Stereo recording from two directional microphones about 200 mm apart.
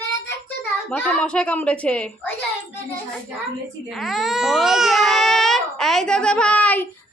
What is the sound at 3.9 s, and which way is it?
Speech, centre (ahead or behind).